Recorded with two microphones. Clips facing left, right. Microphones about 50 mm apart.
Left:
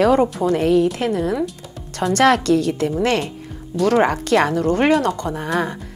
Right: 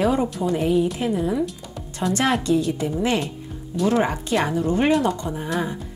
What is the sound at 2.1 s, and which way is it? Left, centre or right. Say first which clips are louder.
Speech: left 6 dB; left.